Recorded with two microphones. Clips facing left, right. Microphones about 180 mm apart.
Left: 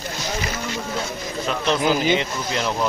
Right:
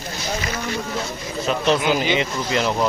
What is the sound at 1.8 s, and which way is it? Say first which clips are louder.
Speech: left 1 dB; 45° left (ahead or behind).